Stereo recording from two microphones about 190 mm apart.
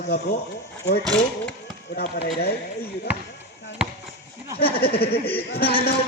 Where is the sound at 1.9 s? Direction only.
55° left (ahead or behind).